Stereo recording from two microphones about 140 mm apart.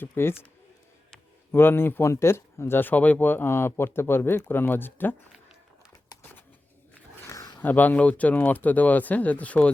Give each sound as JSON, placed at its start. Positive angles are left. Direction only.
{"t": 0.0, "sound": "speech", "side_deg": 15}
{"t": 1.5, "sound": "speech", "side_deg": 15}
{"t": 7.3, "sound": "a sound", "side_deg": 25}
{"t": 7.6, "sound": "speech", "side_deg": 10}